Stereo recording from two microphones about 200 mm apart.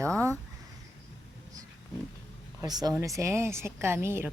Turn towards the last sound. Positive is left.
turn(degrees=-10)  # may be behind; listen again after turning